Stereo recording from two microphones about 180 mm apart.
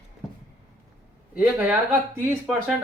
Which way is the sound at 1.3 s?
5° right (ahead or behind).